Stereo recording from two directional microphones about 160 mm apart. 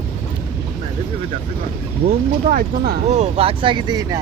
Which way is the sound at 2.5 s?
70° right (ahead or behind).